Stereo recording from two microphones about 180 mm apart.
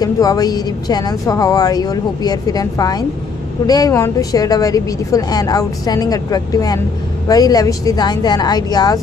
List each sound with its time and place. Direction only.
0.0 s a woman's voice: 20° left (ahead or behind)